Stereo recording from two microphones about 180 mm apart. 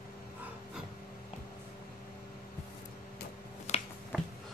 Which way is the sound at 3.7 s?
40° left (ahead or behind).